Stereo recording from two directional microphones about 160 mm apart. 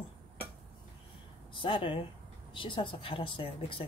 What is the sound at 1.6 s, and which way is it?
Speech, 30° left (ahead or behind).